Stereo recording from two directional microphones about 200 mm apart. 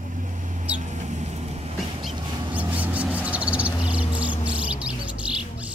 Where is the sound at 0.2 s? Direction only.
40° right (ahead or behind).